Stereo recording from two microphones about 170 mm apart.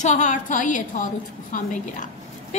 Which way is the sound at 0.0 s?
45° left (ahead or behind).